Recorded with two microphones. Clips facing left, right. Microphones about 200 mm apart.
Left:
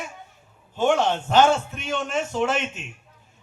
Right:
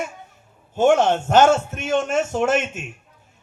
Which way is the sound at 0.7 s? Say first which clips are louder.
Right 5 dB; 45° right (ahead or behind).